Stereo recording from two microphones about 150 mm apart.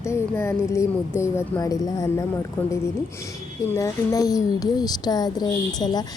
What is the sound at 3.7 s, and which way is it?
A woman's voice, 25° left (ahead or behind).